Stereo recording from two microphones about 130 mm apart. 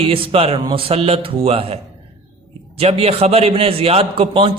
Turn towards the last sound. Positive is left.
turn(degrees=-45)  # may be behind; listen again after turning